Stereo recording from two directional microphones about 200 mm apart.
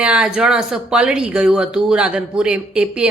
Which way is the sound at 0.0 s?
5° right (ahead or behind).